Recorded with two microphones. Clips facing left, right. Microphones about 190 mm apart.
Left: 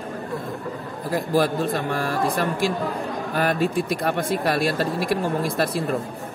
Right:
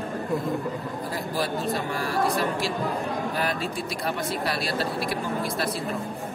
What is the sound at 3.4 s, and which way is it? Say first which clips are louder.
Speech: left 6 dB; 50° left (ahead or behind).